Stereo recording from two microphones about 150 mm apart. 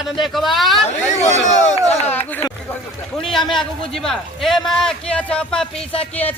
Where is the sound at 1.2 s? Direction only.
50° left (ahead or behind).